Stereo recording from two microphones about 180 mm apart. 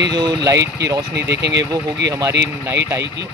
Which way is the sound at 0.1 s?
25° right (ahead or behind).